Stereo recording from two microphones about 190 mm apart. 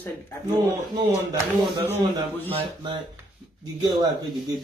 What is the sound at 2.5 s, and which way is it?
Speech, 25° right (ahead or behind).